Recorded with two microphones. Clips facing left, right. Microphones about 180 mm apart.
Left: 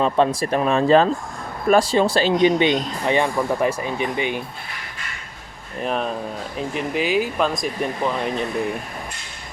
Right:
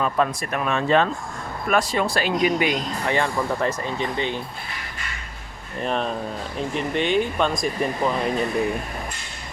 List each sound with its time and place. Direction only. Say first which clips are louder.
0.0 s speech: left 4 dB; 30° left (ahead or behind); by 4.4 s 15° left (ahead or behind)
5.8 s speech: left 1 dB; 5° left (ahead or behind)